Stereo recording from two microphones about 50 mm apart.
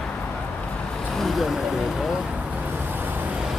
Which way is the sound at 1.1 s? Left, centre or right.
Centre.